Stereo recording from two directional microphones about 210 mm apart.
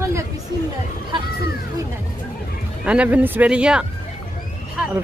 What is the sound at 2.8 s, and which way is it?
Speech, 5° right (ahead or behind).